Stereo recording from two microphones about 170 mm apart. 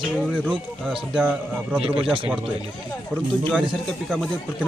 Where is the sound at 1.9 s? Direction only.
30° right (ahead or behind).